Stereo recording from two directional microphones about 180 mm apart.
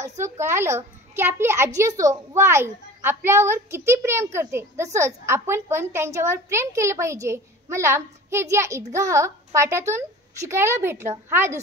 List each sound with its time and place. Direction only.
0.2 s a woman's voice: 15° right (ahead or behind)